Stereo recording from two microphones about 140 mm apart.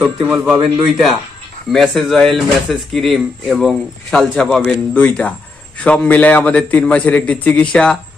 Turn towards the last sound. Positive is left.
turn(degrees=5)  # may be behind; listen again after turning